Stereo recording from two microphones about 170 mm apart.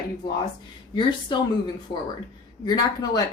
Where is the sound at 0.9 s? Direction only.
25° left (ahead or behind).